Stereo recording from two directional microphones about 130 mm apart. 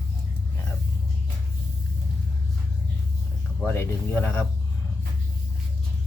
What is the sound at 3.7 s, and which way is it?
Speech, 15° left (ahead or behind).